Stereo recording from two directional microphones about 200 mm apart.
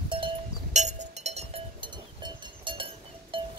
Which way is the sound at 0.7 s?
35° right (ahead or behind).